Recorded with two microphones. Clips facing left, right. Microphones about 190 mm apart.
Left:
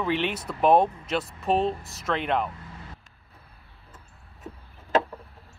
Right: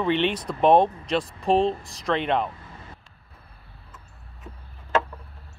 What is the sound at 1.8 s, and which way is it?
Speech, 5° left (ahead or behind).